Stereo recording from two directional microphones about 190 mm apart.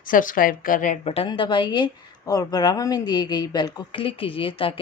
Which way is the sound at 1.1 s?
30° left (ahead or behind).